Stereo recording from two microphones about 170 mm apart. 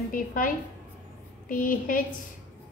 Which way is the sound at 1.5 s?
55° left (ahead or behind).